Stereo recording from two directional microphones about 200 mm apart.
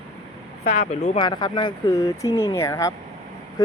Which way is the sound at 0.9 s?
30° left (ahead or behind).